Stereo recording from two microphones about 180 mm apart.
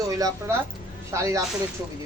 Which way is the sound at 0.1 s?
20° right (ahead or behind).